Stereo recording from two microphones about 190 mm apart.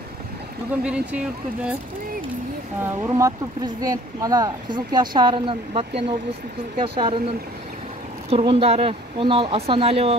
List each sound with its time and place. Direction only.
0.8 s speech: 5° right (ahead or behind)
2.8 s speech: 15° right (ahead or behind)
8.3 s speech: 30° right (ahead or behind)